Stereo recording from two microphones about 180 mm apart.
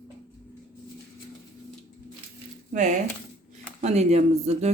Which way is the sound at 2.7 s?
40° right (ahead or behind).